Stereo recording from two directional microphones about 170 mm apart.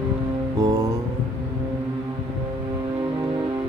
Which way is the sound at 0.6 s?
20° right (ahead or behind).